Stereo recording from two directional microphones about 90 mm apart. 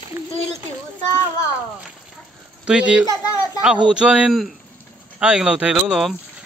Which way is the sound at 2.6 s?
10° right (ahead or behind).